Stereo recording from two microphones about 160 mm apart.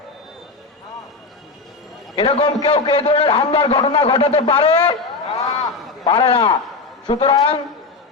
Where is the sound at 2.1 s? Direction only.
35° left (ahead or behind).